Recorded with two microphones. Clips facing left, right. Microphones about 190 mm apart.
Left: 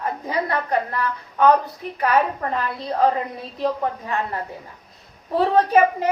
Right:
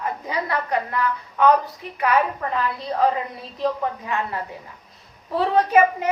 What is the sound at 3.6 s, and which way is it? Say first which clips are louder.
Speech: left 1 dB; 35° left (ahead or behind).